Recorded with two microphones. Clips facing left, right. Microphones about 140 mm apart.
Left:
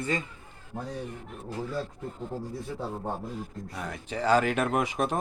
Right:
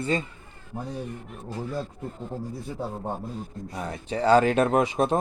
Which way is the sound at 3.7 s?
30° right (ahead or behind).